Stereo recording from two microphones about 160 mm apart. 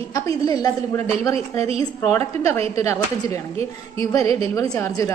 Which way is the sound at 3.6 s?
35° right (ahead or behind).